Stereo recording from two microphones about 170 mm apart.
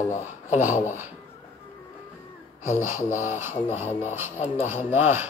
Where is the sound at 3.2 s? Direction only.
15° right (ahead or behind).